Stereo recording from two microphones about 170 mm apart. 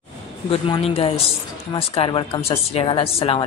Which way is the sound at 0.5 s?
35° left (ahead or behind).